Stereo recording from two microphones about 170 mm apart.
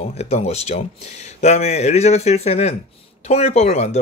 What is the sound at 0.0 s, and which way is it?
Speech, 40° left (ahead or behind).